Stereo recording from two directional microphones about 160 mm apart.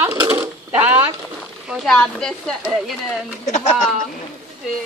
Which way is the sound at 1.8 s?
5° left (ahead or behind).